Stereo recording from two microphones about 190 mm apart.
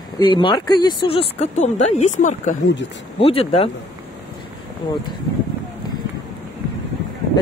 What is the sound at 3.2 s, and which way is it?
Speech, 30° left (ahead or behind).